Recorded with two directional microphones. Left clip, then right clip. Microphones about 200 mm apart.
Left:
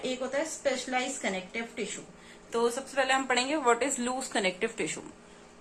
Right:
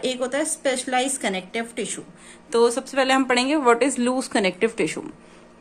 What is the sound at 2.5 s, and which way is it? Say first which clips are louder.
Speech: right 10 dB; 45° right (ahead or behind).